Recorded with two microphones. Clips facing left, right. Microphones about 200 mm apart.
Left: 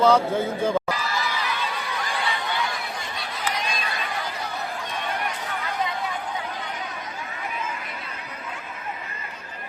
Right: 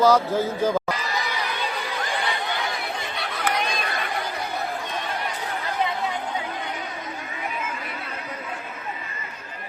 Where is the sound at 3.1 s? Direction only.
60° right (ahead or behind).